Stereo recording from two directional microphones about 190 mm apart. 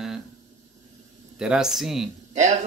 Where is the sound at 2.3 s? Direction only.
35° right (ahead or behind).